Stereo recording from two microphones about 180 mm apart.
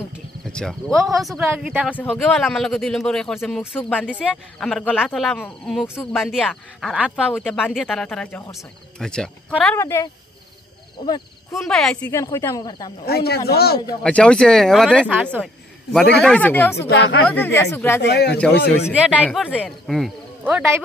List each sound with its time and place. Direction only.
0.5 s speech: 5° left (ahead or behind)
9.8 s speech: 15° left (ahead or behind)
11.5 s speech: centre (ahead or behind); by 12.9 s 20° left (ahead or behind)
13.0 s speech: 60° left (ahead or behind)
14.0 s speech: 5° left (ahead or behind)
16.7 s speech: 90° left
17.6 s speech: 15° left (ahead or behind)
18.0 s speech: 65° left (ahead or behind)
18.3 s speech: 10° left (ahead or behind)
20.4 s speech: 10° right (ahead or behind)